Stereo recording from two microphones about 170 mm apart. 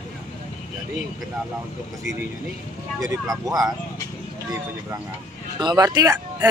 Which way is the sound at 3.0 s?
20° right (ahead or behind).